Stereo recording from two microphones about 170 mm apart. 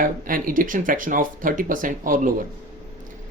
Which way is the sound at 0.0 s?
55° right (ahead or behind).